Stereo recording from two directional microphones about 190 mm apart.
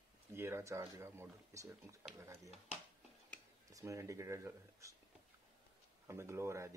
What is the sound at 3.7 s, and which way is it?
Speech, 15° right (ahead or behind).